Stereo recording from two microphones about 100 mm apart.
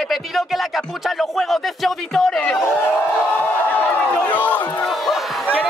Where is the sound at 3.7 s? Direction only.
15° left (ahead or behind).